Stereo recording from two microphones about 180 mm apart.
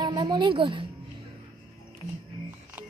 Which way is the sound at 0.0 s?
25° right (ahead or behind).